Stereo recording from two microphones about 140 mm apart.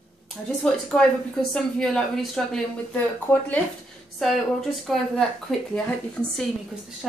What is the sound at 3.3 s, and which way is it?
Speech, 15° left (ahead or behind).